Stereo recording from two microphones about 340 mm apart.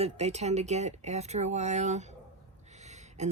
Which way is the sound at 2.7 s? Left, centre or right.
Centre.